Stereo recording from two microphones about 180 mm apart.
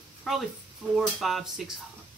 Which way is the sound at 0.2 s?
Centre (ahead or behind).